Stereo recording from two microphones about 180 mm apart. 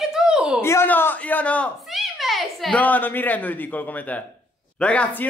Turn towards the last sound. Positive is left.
turn(degrees=5)  # may be behind; listen again after turning